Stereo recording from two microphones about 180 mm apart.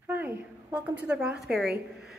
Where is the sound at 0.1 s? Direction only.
10° right (ahead or behind).